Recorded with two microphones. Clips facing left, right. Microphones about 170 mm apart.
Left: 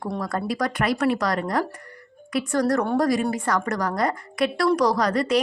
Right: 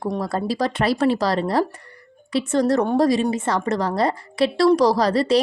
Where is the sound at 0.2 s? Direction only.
30° right (ahead or behind).